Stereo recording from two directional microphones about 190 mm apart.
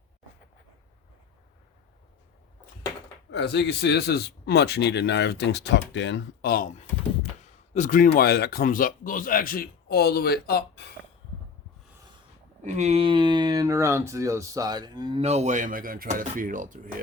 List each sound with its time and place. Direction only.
3.3 s a man's voice: 65° left (ahead or behind)
12.6 s speech: 40° right (ahead or behind); by 15.2 s 20° right (ahead or behind)
15.2 s speech: 35° right (ahead or behind)